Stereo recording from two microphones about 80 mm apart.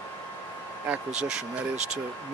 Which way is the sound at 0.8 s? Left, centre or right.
Centre.